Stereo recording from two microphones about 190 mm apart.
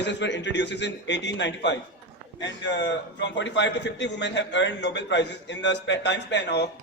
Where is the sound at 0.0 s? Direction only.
65° left (ahead or behind).